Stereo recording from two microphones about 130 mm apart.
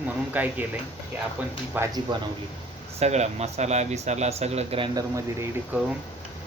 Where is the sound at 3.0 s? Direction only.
55° right (ahead or behind).